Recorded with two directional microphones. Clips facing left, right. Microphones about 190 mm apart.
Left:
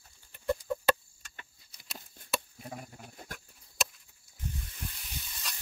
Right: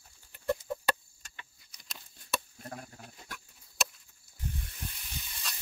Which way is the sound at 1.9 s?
55° left (ahead or behind).